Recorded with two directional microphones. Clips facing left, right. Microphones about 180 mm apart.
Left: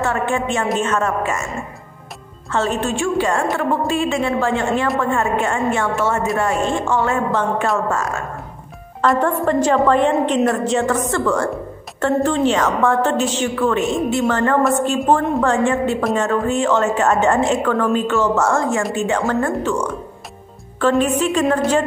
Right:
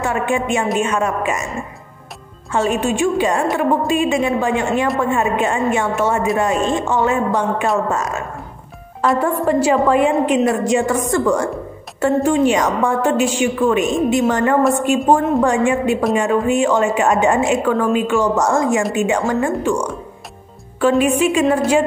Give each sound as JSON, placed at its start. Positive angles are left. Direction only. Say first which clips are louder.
{"t": 0.0, "sound": "a woman's voice", "louder": "right 1 dB", "side_deg": -15}
{"t": 2.5, "sound": "a woman's voice", "louder": "right 2 dB", "side_deg": -15}
{"t": 9.0, "sound": "a woman's voice", "louder": "even", "side_deg": -5}
{"t": 21.0, "sound": "a woman's voice", "louder": "right 2 dB", "side_deg": -10}